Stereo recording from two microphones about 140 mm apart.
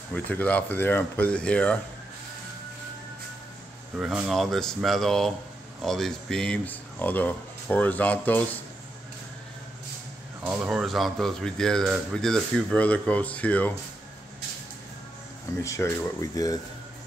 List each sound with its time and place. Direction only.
0.1 s speech: 10° left (ahead or behind)
4.0 s speech: 5° right (ahead or behind); by 8.5 s 10° left (ahead or behind)
10.5 s speech: 5° right (ahead or behind); by 13.7 s 10° left (ahead or behind)
15.6 s speech: 20° left (ahead or behind)